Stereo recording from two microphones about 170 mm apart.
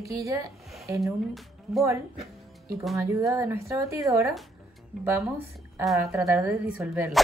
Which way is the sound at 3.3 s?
15° right (ahead or behind).